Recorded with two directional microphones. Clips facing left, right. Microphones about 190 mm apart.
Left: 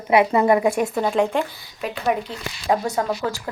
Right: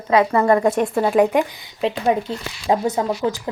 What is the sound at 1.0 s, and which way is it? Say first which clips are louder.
Speech: right 4 dB; 5° right (ahead or behind).